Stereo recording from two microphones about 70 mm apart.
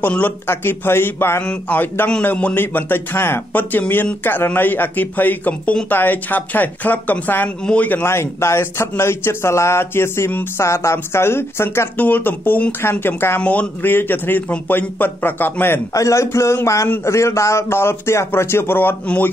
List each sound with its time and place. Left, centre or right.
0.5 s speech: left
1.4 s a man's voice: left
8.0 s speech: left
12.0 s a man's voice: left
13.4 s a man's voice: left
15.9 s a man's voice: left